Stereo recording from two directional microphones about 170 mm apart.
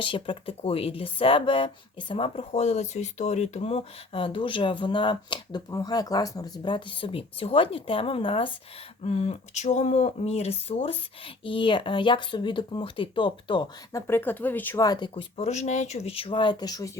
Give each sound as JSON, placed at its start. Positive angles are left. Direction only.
{"t": 0.0, "sound": "speech", "side_deg": 30}
{"t": 14.1, "sound": "speech", "side_deg": 10}
{"t": 14.8, "sound": "speech", "side_deg": 25}